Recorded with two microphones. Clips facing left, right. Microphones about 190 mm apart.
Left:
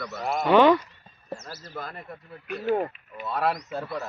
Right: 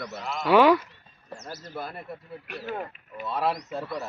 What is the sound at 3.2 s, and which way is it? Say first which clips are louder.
Speech: left 1 dB; centre (ahead or behind).